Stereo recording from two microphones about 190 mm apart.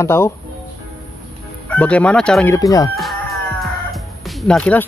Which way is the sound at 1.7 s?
5° left (ahead or behind).